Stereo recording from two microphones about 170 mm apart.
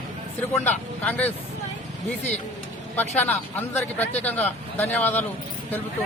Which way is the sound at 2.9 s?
10° left (ahead or behind).